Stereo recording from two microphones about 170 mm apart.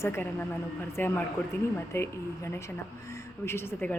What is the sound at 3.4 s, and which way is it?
Speech, 15° left (ahead or behind).